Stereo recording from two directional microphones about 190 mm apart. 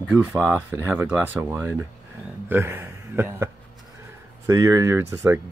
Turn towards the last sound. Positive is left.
turn(degrees=-15)  # may be behind; listen again after turning